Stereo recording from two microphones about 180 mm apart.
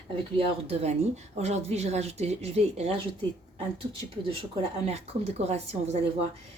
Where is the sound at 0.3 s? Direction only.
35° right (ahead or behind).